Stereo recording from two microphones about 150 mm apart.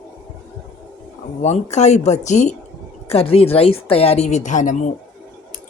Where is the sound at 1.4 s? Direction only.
50° left (ahead or behind).